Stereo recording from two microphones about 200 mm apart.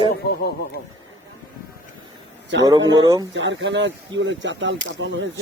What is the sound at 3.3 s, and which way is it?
Speech, 65° right (ahead or behind).